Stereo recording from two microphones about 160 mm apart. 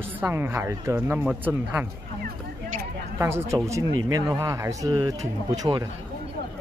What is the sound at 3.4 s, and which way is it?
Speech, 20° right (ahead or behind).